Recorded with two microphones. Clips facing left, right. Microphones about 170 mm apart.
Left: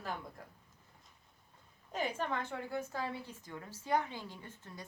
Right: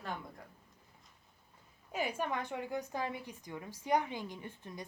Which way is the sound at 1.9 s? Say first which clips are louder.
Right 1 dB; 10° right (ahead or behind).